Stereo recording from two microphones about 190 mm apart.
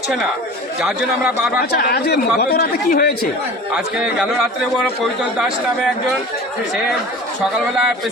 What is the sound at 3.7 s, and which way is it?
A man's voice, 5° right (ahead or behind).